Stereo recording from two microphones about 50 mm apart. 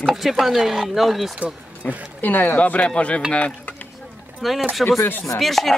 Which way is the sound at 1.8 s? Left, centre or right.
Left.